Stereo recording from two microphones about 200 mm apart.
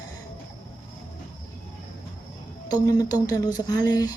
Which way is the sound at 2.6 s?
20° left (ahead or behind).